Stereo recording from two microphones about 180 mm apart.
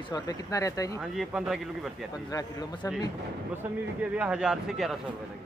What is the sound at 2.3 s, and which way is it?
Speech, 20° left (ahead or behind).